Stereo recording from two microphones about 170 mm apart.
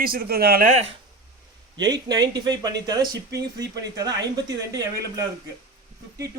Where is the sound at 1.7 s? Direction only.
25° right (ahead or behind).